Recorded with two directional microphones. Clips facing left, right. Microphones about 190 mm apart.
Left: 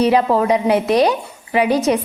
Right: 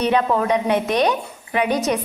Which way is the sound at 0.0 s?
30° left (ahead or behind).